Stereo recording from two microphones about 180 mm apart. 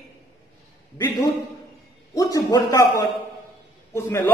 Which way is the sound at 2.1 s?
20° left (ahead or behind).